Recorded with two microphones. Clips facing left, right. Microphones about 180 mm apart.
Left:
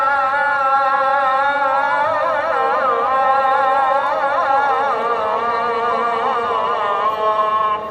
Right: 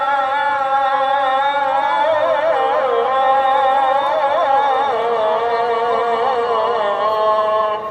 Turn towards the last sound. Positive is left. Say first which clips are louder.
# right 4 dB
turn(degrees=-30)  # may be behind; listen again after turning